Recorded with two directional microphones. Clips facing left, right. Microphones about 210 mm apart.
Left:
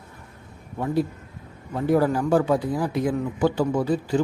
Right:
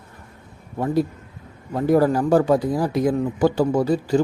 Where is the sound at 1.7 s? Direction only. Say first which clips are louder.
Right 3 dB; 40° right (ahead or behind).